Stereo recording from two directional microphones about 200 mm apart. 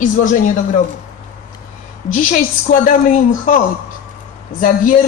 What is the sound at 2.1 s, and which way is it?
Speech, 40° left (ahead or behind).